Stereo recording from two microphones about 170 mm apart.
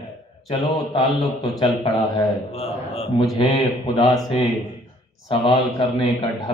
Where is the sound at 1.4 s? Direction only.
30° left (ahead or behind).